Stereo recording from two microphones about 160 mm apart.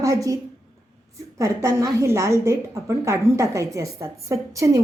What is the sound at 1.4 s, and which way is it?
A woman's voice, 20° right (ahead or behind).